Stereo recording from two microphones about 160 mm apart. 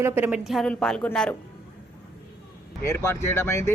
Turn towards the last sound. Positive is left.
turn(degrees=15)  # may be behind; listen again after turning